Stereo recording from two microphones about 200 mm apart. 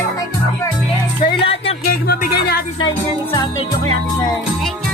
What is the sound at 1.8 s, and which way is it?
Music, 45° left (ahead or behind).